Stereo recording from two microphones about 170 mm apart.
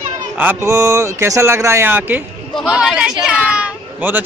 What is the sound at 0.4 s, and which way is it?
Speech, 10° right (ahead or behind).